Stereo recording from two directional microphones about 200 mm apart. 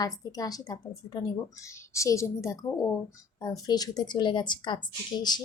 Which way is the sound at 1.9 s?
15° left (ahead or behind).